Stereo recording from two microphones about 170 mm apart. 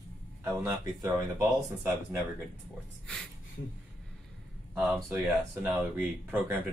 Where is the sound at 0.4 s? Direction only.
15° right (ahead or behind).